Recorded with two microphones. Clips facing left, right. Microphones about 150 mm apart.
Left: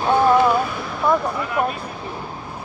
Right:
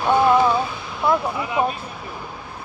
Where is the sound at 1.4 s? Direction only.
15° right (ahead or behind).